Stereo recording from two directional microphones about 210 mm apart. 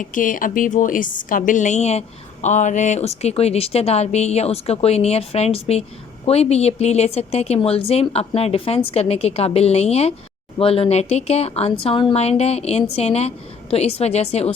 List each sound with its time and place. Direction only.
0.0 s a woman's voice: 40° left (ahead or behind)